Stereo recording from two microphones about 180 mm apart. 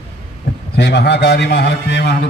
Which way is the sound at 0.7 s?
70° left (ahead or behind).